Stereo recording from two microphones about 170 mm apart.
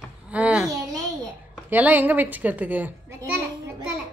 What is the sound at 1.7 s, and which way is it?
A woman's voice, 10° right (ahead or behind).